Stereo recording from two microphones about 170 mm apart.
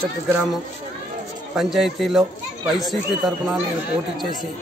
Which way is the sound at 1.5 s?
Centre (ahead or behind).